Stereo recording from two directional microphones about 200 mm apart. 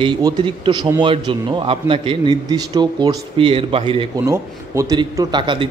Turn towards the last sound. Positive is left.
turn(degrees=-25)  # may be behind; listen again after turning